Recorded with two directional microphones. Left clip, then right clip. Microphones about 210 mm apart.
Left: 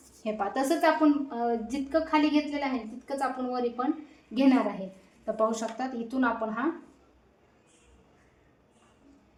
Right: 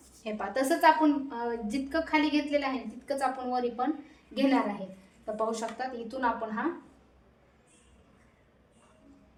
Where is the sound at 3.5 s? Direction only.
30° left (ahead or behind).